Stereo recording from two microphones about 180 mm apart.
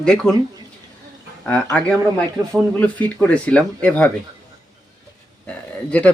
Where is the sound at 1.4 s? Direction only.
5° left (ahead or behind).